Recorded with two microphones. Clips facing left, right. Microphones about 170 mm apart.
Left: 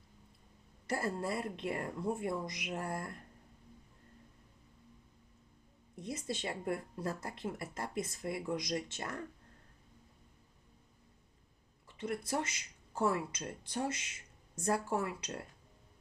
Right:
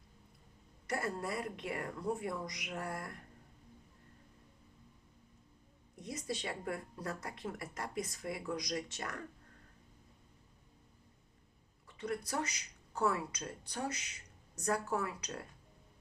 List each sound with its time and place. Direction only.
0.9 s speech: 30° left (ahead or behind)
6.0 s speech: 30° left (ahead or behind)
11.9 s speech: 25° left (ahead or behind)